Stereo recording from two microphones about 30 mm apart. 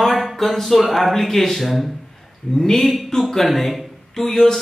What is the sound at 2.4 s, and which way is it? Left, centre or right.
Speech, centre.